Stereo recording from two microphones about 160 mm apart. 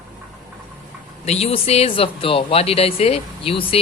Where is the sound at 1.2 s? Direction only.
40° left (ahead or behind).